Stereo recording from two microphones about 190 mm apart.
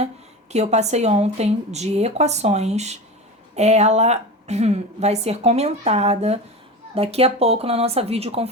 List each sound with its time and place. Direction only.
0.5 s a woman's voice: 35° right (ahead or behind)